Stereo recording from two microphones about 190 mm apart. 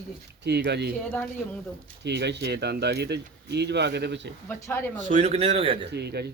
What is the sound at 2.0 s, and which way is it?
Speech, 60° right (ahead or behind).